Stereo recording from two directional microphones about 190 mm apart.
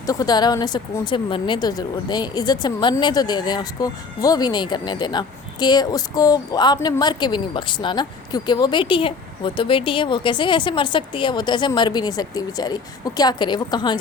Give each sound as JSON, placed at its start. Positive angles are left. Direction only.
{"t": 0.0, "sound": "a woman's voice", "side_deg": 20}